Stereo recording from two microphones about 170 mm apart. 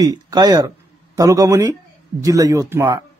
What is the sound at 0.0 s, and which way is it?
Speech, 20° right (ahead or behind).